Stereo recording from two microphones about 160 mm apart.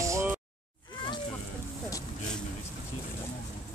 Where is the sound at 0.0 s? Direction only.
20° right (ahead or behind).